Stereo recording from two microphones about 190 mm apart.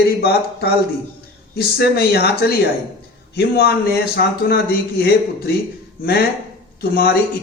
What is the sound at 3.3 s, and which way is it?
A man's voice, 55° left (ahead or behind).